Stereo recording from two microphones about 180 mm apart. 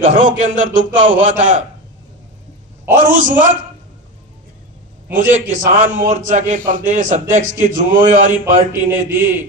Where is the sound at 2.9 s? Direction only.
45° right (ahead or behind).